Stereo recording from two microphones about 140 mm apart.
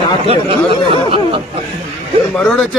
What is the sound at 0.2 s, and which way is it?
Speech, 40° right (ahead or behind).